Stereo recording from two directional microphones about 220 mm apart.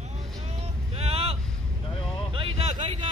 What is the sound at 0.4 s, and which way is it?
Vehicle, 30° right (ahead or behind).